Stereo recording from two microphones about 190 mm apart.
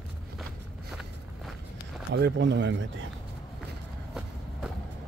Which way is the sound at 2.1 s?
60° right (ahead or behind).